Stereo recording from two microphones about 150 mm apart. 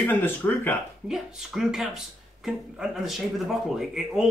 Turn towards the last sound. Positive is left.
turn(degrees=-5)  # may be behind; listen again after turning